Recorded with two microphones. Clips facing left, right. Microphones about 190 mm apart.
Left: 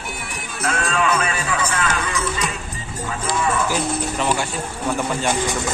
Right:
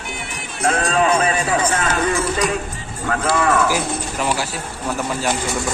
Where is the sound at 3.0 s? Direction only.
65° right (ahead or behind).